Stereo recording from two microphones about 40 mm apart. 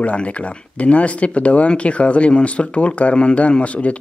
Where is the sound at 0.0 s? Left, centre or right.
Left.